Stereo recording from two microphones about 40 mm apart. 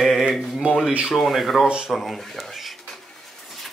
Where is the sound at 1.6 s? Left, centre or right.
Right.